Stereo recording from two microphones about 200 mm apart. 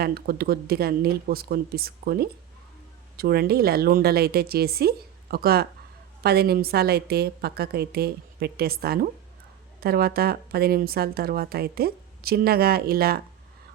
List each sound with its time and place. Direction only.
0.0 s a woman's voice: 50° right (ahead or behind)